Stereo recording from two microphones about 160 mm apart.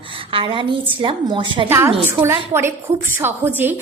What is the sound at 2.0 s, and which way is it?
A woman's voice, 15° right (ahead or behind).